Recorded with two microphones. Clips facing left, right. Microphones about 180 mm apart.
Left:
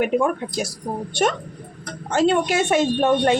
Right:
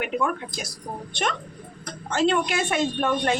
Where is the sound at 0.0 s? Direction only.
45° left (ahead or behind).